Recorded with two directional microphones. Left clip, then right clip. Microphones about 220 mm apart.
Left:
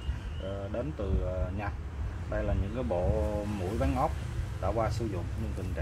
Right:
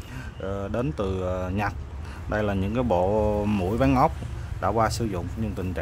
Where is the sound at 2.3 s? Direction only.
40° right (ahead or behind).